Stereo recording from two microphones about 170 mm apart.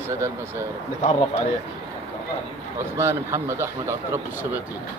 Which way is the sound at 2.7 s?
15° right (ahead or behind).